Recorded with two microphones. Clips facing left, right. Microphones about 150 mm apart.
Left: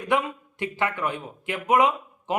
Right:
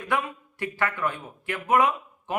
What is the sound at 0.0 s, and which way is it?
A man's voice, 20° left (ahead or behind).